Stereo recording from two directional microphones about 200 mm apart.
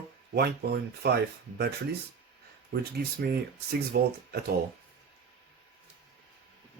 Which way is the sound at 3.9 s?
55° right (ahead or behind).